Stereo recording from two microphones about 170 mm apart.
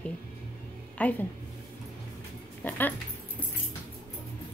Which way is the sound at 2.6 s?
10° left (ahead or behind).